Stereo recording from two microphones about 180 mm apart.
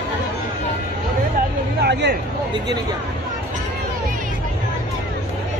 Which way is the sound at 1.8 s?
65° right (ahead or behind).